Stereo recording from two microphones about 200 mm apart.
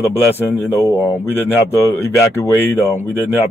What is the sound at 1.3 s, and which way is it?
Speech, 10° left (ahead or behind).